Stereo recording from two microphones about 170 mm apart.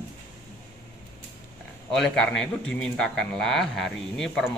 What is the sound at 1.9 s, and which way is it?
A man's voice, 5° left (ahead or behind).